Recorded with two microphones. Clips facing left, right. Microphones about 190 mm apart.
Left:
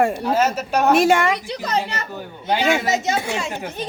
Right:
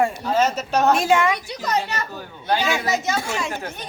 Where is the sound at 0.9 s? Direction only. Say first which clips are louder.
Left 3 dB; 70° left (ahead or behind).